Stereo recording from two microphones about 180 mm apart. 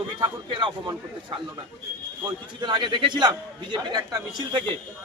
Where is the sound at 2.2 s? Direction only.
25° right (ahead or behind).